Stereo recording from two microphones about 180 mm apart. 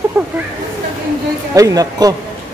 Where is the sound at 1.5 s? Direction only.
20° right (ahead or behind).